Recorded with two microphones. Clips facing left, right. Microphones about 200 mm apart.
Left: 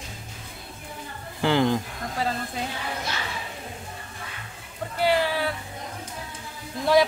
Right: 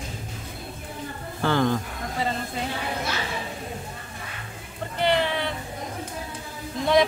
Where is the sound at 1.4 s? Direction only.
15° left (ahead or behind).